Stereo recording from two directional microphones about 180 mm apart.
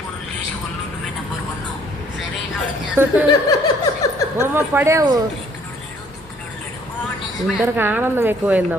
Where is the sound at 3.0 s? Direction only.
10° right (ahead or behind).